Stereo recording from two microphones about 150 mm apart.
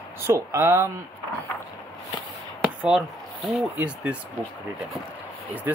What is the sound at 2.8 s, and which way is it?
Speech, centre (ahead or behind).